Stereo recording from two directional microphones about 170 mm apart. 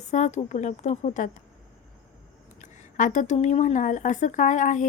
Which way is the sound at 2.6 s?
50° left (ahead or behind).